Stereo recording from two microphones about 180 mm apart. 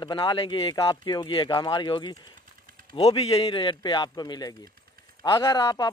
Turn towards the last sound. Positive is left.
turn(degrees=25)  # may be behind; listen again after turning